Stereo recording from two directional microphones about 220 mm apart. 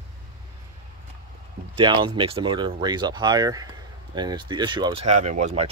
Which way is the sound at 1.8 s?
20° right (ahead or behind).